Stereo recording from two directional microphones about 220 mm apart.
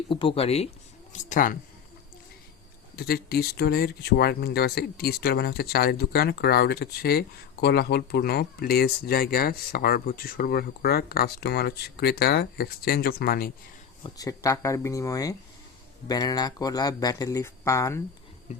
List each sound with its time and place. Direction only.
0.1 s speech: 25° left (ahead or behind)
2.9 s speech: 45° left (ahead or behind)
14.0 s speech: 15° left (ahead or behind)